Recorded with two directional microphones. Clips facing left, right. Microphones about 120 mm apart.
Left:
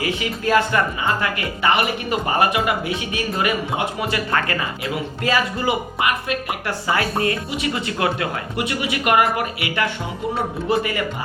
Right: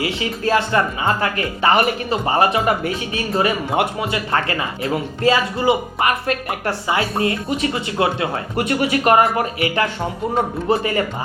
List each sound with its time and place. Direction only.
0.0 s speech: 30° right (ahead or behind)
6.0 s speech: 40° right (ahead or behind)
6.8 s speech: 25° right (ahead or behind)
8.5 s speech: 45° right (ahead or behind)